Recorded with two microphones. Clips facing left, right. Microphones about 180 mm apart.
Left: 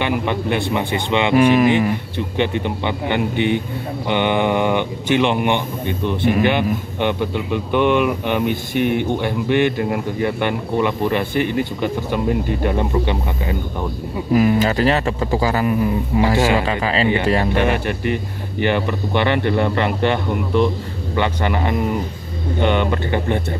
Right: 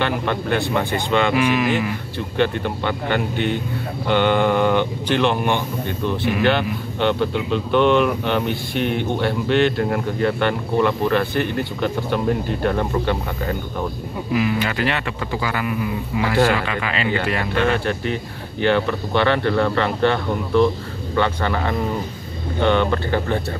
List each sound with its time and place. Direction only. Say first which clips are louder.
0.0 s speech: left 2 dB; 15° left (ahead or behind)
1.3 s speech: left 6 dB; 50° left (ahead or behind)
2.3 s speech: even; 15° left (ahead or behind)
14.3 s speech: left 6 dB; 40° left (ahead or behind)
17.6 s speech: left 1 dB; 15° left (ahead or behind)